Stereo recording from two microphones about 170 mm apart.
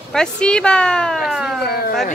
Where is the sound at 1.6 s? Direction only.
65° left (ahead or behind).